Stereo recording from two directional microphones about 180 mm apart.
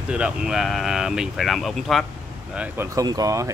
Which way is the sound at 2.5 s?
15° right (ahead or behind).